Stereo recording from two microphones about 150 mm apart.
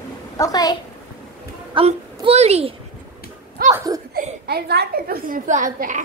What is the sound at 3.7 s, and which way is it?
Speech, 20° right (ahead or behind).